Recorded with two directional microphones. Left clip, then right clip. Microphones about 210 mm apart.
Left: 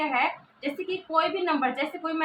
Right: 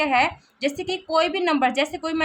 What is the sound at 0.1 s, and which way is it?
A woman's voice, 60° right (ahead or behind).